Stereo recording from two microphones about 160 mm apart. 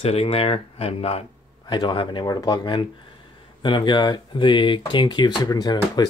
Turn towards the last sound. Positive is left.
turn(degrees=25)  # may be behind; listen again after turning